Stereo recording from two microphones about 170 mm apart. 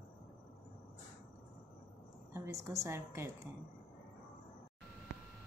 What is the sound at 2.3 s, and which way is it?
A woman's voice, 15° right (ahead or behind).